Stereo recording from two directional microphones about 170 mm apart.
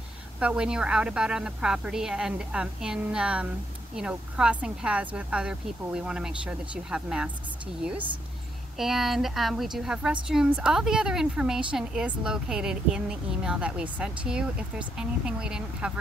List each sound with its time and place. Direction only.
0.4 s a woman's voice: 5° right (ahead or behind)